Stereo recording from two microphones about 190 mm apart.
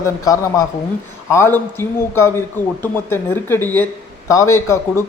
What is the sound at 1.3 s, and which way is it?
A man's voice, 10° left (ahead or behind).